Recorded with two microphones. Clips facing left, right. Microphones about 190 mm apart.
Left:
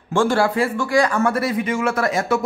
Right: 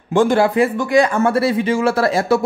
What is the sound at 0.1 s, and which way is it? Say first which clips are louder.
Speech: right 4 dB; 20° right (ahead or behind).